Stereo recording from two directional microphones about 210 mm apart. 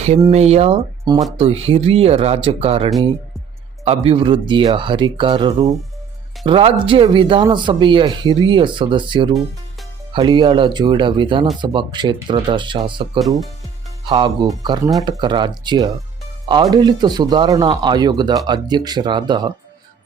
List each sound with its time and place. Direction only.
0.3 s speech: 30° right (ahead or behind)
14.1 s speech: 25° right (ahead or behind)